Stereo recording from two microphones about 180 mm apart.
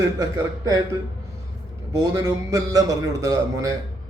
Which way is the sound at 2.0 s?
20° right (ahead or behind).